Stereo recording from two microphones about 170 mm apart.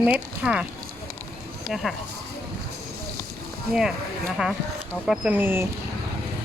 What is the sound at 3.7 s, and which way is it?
Speech, 5° right (ahead or behind).